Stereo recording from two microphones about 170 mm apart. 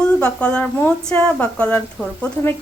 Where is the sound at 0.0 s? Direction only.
5° left (ahead or behind).